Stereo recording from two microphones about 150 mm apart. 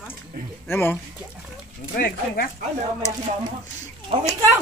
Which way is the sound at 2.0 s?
80° left.